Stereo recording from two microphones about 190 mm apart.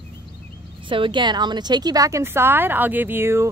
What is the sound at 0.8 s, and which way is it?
A woman's voice, 25° right (ahead or behind).